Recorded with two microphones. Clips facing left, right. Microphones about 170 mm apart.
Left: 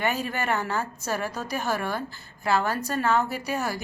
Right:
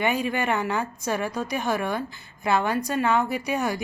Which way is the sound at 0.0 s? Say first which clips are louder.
Right 3 dB; 15° right (ahead or behind).